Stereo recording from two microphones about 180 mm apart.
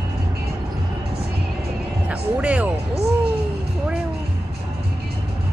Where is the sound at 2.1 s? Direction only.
5° right (ahead or behind).